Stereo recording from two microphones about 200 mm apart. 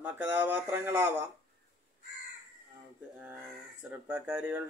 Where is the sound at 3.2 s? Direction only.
5° right (ahead or behind).